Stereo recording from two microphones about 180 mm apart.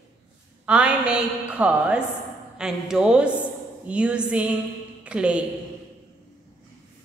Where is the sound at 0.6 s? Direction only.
5° right (ahead or behind).